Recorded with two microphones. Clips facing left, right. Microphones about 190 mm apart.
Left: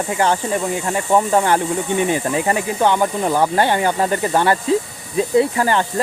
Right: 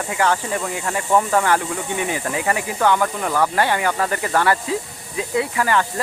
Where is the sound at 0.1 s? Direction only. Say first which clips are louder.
Left 1 dB; 25° left (ahead or behind).